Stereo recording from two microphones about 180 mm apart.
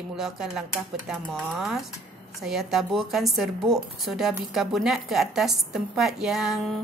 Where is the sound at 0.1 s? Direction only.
5° right (ahead or behind).